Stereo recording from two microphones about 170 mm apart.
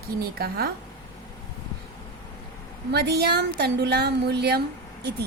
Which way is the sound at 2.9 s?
70° right (ahead or behind).